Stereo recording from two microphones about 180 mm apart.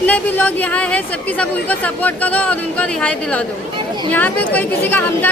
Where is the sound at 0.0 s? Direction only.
10° left (ahead or behind).